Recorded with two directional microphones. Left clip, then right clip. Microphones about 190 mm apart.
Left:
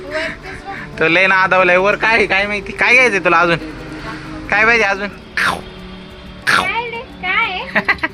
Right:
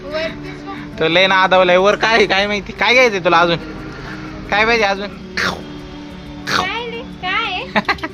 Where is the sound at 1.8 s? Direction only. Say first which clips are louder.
Even; 20° right (ahead or behind).